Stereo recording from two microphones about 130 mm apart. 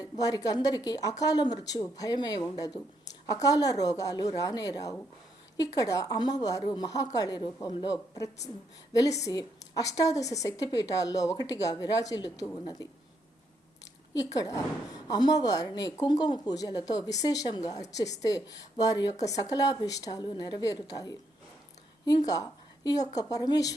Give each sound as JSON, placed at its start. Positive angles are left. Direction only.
{"t": 0.0, "sound": "speech", "side_deg": 30}
{"t": 14.3, "sound": "speech", "side_deg": 30}
{"t": 22.3, "sound": "speech", "side_deg": 30}